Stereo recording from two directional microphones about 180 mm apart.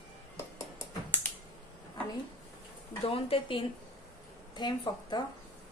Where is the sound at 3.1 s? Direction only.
30° left (ahead or behind).